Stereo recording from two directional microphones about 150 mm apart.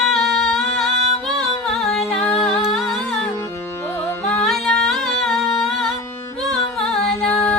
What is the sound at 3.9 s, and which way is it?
Carnatic music, 10° left (ahead or behind).